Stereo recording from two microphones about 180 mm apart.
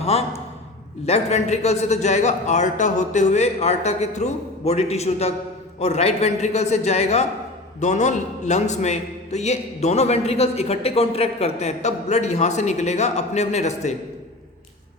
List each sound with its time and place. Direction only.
0.0 s a man's voice: 35° left (ahead or behind)